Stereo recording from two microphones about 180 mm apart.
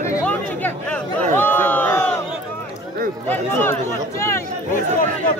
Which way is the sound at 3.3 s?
10° left (ahead or behind).